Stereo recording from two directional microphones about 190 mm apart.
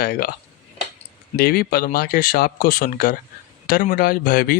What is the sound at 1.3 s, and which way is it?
Speech, 55° left (ahead or behind).